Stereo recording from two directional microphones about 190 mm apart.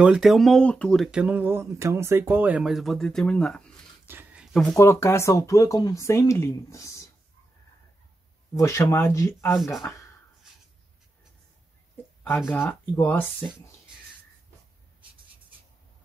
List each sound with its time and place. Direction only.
0.0 s speech: 5° right (ahead or behind)
4.1 s a sound: 10° right (ahead or behind)
4.7 s speech: 15° left (ahead or behind)
8.5 s speech: 15° left (ahead or behind)
12.4 s speech: 10° left (ahead or behind)